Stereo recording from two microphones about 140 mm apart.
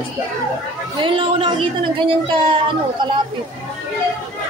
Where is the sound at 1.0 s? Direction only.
35° right (ahead or behind).